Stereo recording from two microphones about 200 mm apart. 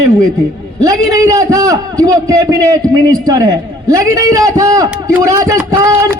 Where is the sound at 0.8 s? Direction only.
15° right (ahead or behind).